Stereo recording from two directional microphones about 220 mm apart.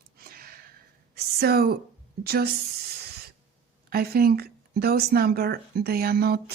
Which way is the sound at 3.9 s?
45° right (ahead or behind).